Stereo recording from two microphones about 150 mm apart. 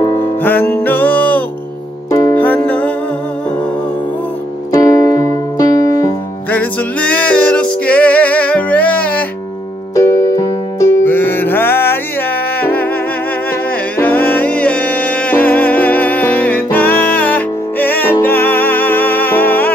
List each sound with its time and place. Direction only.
0.4 s music: 10° left (ahead or behind)
2.0 s music: 20° left (ahead or behind)
2.3 s music: 10° left (ahead or behind)
4.7 s keyboard: 20° left (ahead or behind)
6.5 s music: 10° left (ahead or behind)
9.9 s music: 20° left (ahead or behind)
13.9 s music: 10° left (ahead or behind)